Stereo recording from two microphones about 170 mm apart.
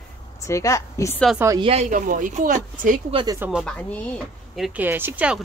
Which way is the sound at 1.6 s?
35° right (ahead or behind).